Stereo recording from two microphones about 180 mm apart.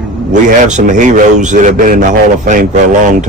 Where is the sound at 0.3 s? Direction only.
40° right (ahead or behind).